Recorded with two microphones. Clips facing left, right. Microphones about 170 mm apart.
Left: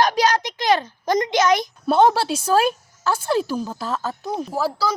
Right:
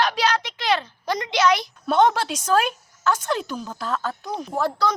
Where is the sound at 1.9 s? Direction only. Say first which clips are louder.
Left 2 dB; 30° left (ahead or behind).